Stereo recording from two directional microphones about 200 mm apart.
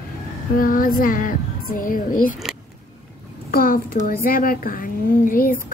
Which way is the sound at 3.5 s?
45° left (ahead or behind).